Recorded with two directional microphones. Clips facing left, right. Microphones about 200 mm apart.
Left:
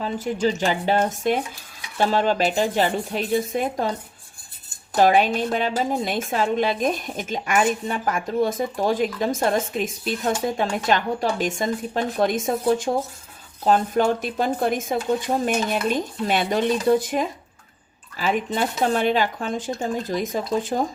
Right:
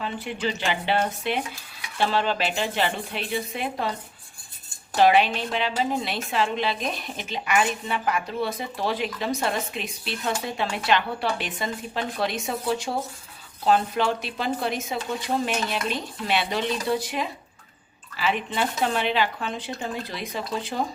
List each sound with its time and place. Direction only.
0.0 s a woman's voice: 40° left (ahead or behind)
4.9 s a woman's voice: 45° left (ahead or behind)